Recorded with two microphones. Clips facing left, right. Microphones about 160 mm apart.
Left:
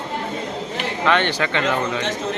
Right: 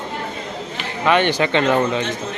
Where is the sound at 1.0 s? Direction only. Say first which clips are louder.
Right 3 dB; 10° right (ahead or behind).